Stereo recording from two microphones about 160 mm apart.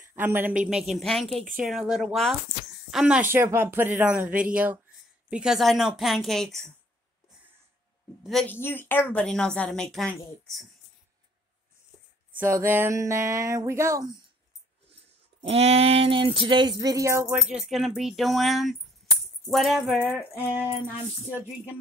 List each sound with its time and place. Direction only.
0.1 s a woman's voice: 15° right (ahead or behind)
8.2 s a woman's voice: centre (ahead or behind)
8.5 s a woman's voice: 15° left (ahead or behind)
12.4 s a sound: 15° right (ahead or behind)
15.4 s a sound: 40° right (ahead or behind); by 18.8 s centre (ahead or behind)
19.5 s a woman's voice: centre (ahead or behind)